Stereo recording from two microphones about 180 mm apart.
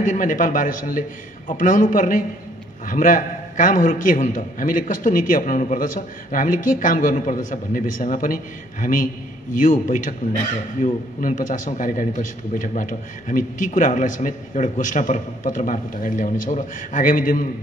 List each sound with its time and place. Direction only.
0.0 s speech: 45° left (ahead or behind)